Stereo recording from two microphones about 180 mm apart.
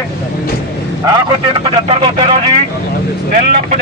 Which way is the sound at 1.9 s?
35° right (ahead or behind).